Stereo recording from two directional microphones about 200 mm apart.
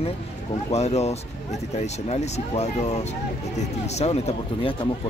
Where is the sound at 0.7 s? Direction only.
30° left (ahead or behind).